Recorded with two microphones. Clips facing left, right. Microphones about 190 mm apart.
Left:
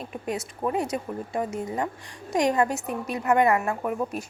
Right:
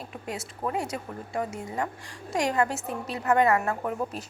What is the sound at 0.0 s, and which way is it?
A woman's voice, 20° left (ahead or behind).